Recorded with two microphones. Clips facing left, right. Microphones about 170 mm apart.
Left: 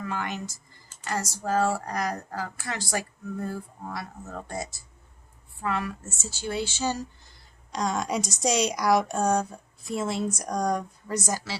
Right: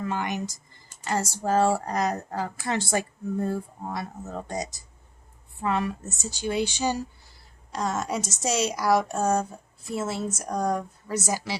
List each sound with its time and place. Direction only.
0.0 s a woman's voice: 20° right (ahead or behind)
1.0 s a woman's voice: 25° right (ahead or behind)
7.7 s a woman's voice: 5° right (ahead or behind)